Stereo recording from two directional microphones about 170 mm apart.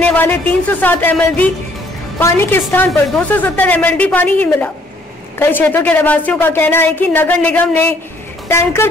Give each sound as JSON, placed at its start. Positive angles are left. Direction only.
{"t": 0.1, "sound": "a woman's voice", "side_deg": 10}